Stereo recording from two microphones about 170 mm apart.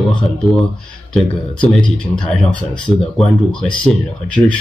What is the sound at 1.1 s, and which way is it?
Speech, 5° left (ahead or behind).